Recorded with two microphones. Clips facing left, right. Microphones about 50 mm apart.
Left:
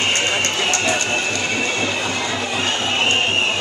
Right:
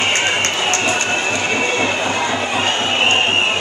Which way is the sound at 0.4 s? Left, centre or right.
Right.